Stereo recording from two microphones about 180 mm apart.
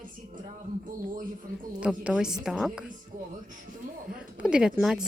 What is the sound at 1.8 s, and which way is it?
A woman's voice, 5° right (ahead or behind).